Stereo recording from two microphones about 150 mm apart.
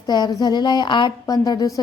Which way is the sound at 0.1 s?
25° left (ahead or behind).